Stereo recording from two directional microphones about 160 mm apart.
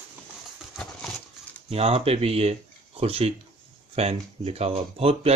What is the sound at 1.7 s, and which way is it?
Speech, 40° right (ahead or behind).